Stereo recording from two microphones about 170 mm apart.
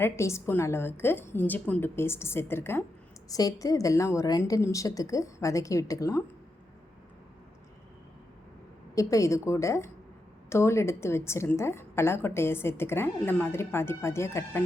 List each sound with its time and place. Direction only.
0.0 s a woman's voice: 15° left (ahead or behind)
9.0 s a woman's voice: 20° left (ahead or behind)